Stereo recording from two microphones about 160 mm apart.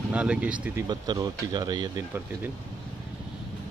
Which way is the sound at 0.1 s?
5° right (ahead or behind).